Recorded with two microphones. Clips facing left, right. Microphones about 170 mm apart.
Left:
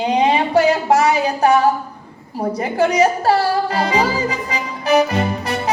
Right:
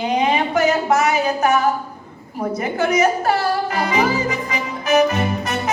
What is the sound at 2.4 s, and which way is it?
Music, 35° left (ahead or behind).